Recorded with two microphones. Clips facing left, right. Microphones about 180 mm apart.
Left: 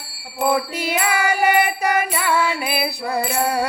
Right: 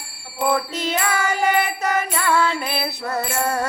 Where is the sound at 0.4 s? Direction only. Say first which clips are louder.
Left 1 dB; 10° left (ahead or behind).